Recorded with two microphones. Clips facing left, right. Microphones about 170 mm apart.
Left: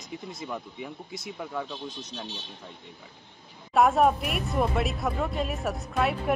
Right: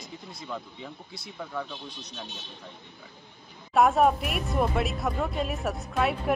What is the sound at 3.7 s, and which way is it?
Speech, centre (ahead or behind).